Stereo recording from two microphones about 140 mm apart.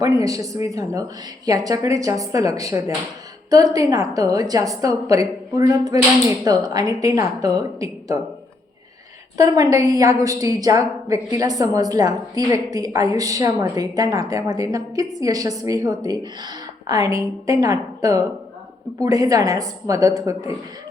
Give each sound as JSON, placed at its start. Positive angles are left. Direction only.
{"t": 0.0, "sound": "a woman's voice", "side_deg": -25}
{"t": 9.4, "sound": "a woman's voice", "side_deg": -25}